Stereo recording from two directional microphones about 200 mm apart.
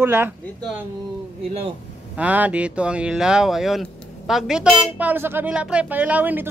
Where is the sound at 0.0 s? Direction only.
10° right (ahead or behind).